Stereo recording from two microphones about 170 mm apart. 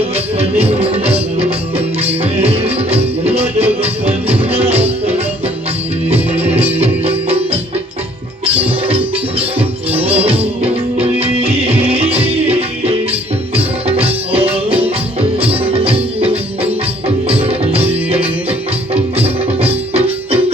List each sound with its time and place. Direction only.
0.3 s music: 35° right (ahead or behind)
6.4 s music: 35° right (ahead or behind)